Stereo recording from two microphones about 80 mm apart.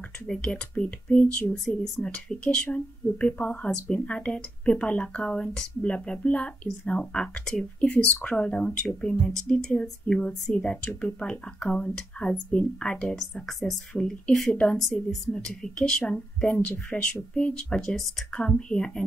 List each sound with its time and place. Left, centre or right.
0.3 s speech: centre
1.5 s speech: centre